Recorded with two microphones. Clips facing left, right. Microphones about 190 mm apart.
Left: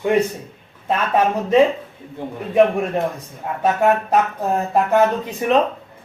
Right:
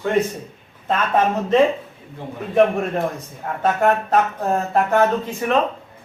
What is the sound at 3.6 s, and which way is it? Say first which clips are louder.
Speech: left 1 dB; 10° left (ahead or behind).